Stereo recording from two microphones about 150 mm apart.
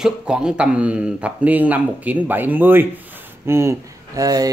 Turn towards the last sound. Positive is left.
turn(degrees=-25)  # may be behind; listen again after turning